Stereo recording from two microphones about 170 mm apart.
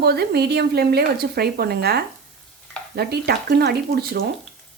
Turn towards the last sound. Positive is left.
turn(degrees=-65)  # may be behind; listen again after turning